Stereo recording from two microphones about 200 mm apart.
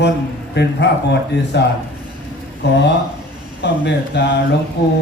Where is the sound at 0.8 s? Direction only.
60° left (ahead or behind).